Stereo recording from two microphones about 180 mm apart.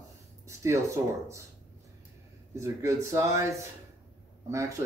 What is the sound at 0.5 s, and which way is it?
Speech, 15° right (ahead or behind).